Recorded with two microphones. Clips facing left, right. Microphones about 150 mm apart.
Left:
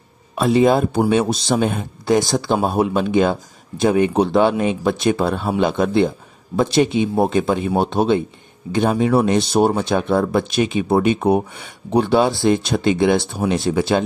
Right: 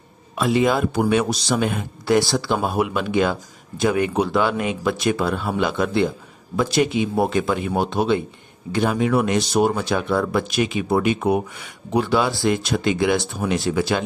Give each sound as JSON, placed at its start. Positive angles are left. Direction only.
{"t": 0.4, "sound": "speech", "side_deg": 25}